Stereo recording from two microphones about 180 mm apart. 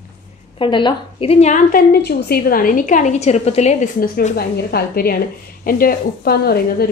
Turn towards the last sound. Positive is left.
turn(degrees=60)  # may be behind; listen again after turning